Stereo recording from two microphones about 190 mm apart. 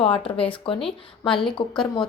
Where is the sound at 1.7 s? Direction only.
Centre (ahead or behind).